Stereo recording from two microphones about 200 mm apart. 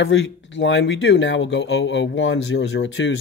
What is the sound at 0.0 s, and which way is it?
Speech, 60° left (ahead or behind).